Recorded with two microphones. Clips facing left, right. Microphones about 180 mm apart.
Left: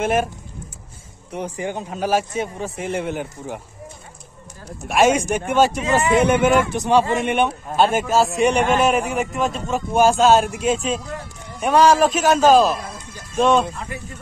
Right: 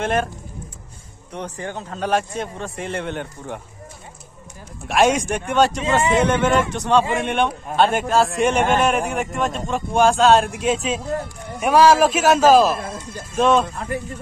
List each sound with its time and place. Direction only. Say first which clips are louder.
0.0 s a man's voice: left 2 dB; 5° left (ahead or behind)
1.3 s a man's voice: left 3 dB; 10° left (ahead or behind)
4.8 s a man's voice: left 1 dB; centre (ahead or behind)
5.9 s speech: left 1 dB; 25° right (ahead or behind)
6.2 s a man's voice: left 2 dB; 10° left (ahead or behind)